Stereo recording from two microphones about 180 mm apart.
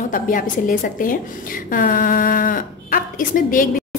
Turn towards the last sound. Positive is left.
turn(degrees=50)  # may be behind; listen again after turning